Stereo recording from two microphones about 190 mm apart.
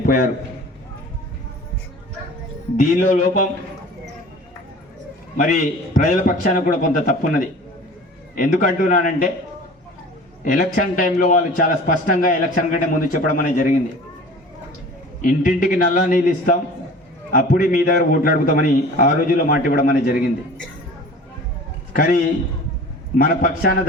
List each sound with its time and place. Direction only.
0.0 s a man's voice: 45° left (ahead or behind)
2.8 s a man's voice: 45° left (ahead or behind)
5.4 s a man's voice: 45° left (ahead or behind)
10.4 s a man's voice: 45° left (ahead or behind)
15.2 s a man's voice: 45° left (ahead or behind)
21.9 s a man's voice: 45° left (ahead or behind)